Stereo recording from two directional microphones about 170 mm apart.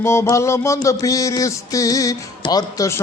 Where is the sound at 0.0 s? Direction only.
15° left (ahead or behind).